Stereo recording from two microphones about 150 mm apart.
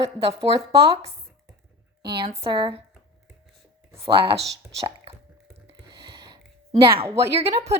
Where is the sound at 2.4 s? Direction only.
35° right (ahead or behind).